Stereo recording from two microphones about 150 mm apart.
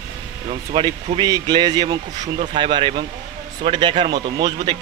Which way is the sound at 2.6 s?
35° right (ahead or behind).